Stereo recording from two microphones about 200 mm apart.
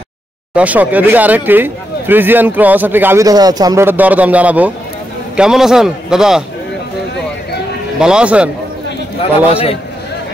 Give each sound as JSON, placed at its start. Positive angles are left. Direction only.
{"t": 0.6, "sound": "a man's voice", "side_deg": -5}
{"t": 8.0, "sound": "a man's voice", "side_deg": -5}
{"t": 9.5, "sound": "a man's voice", "side_deg": 30}